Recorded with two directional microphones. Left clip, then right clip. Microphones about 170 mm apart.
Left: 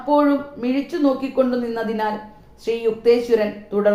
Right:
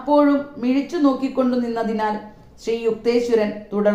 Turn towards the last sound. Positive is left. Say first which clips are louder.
# left 1 dB
turn(degrees=-25)  # may be behind; listen again after turning